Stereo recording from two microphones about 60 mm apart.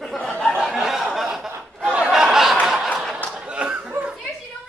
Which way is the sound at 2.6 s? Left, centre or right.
Centre.